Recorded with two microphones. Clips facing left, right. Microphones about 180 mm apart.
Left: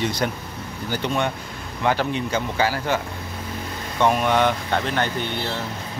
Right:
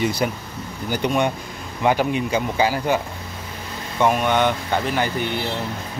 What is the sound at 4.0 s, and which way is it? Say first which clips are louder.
Speech: right 1 dB; centre (ahead or behind).